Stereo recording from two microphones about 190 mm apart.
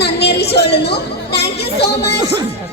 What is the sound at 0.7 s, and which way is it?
Chatter, 60° left (ahead or behind).